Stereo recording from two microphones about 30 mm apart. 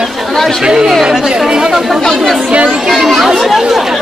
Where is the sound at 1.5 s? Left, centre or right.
Right.